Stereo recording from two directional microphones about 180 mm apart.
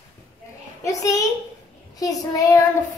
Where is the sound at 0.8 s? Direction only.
20° left (ahead or behind).